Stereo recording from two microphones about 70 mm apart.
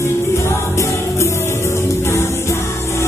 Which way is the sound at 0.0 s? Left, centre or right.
Left.